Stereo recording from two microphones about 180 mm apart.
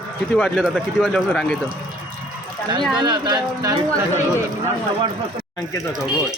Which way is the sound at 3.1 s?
20° right (ahead or behind).